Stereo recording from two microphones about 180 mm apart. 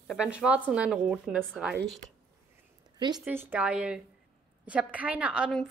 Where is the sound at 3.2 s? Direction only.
10° right (ahead or behind).